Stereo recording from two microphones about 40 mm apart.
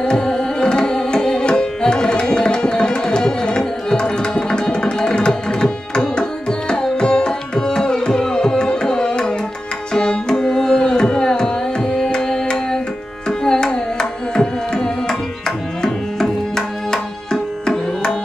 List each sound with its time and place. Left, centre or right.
0.0 s tabla: centre